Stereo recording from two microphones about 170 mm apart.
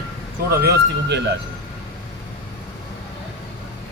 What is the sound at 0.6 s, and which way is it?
Speech, 80° right.